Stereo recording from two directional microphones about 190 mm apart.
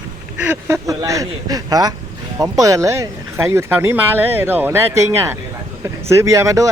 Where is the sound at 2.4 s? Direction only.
20° right (ahead or behind).